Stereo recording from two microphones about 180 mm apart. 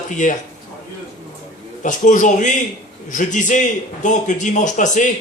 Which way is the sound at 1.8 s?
45° left (ahead or behind).